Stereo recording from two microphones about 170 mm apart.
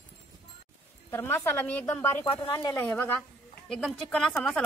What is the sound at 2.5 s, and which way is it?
Speech, 25° left (ahead or behind).